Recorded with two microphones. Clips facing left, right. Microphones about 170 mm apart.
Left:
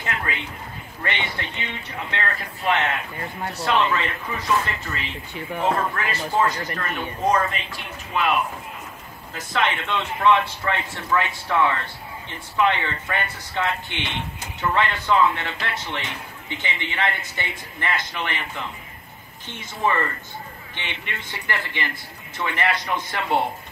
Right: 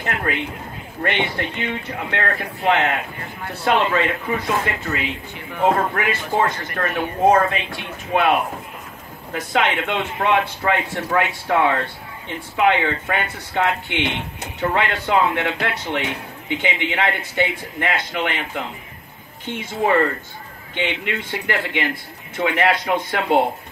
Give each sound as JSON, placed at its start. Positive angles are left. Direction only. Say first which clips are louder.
{"t": 0.0, "sound": "speech", "louder": "right 5 dB", "side_deg": -50}